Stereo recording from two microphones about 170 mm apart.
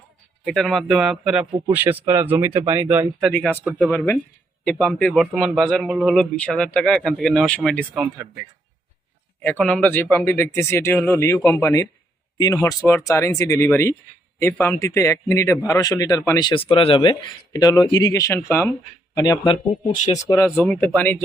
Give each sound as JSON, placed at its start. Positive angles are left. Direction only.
{"t": 0.4, "sound": "a man's voice", "side_deg": 0}
{"t": 3.2, "sound": "a man's voice", "side_deg": 0}
{"t": 9.4, "sound": "a man's voice", "side_deg": 10}
{"t": 19.9, "sound": "speech", "side_deg": 45}
{"t": 20.3, "sound": "speech", "side_deg": 15}